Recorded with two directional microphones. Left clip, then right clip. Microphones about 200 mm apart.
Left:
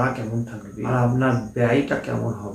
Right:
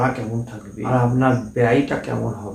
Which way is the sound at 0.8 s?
Centre (ahead or behind).